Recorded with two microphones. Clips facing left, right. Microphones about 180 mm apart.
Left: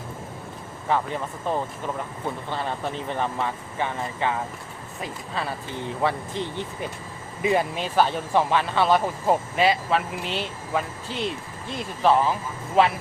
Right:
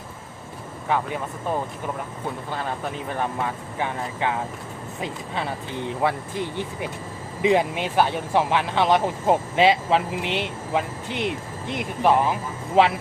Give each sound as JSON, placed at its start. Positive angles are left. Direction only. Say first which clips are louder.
{"t": 0.9, "sound": "speech", "louder": "even", "side_deg": -5}
{"t": 2.5, "sound": "speech", "louder": "even", "side_deg": -10}
{"t": 4.9, "sound": "speech", "louder": "right 1 dB", "side_deg": -20}